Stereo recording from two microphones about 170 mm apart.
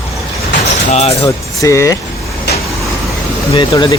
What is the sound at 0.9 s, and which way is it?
Speech, 40° left (ahead or behind).